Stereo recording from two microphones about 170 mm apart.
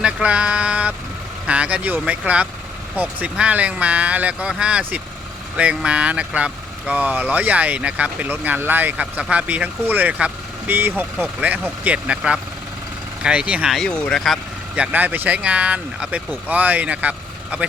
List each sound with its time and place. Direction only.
0.0 s speech: 5° right (ahead or behind)
14.8 s speech: 10° right (ahead or behind)